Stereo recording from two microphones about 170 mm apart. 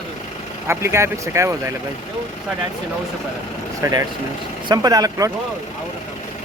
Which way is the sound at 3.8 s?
20° right (ahead or behind).